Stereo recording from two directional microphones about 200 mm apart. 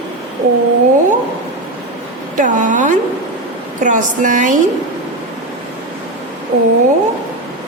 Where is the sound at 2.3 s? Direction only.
40° right (ahead or behind).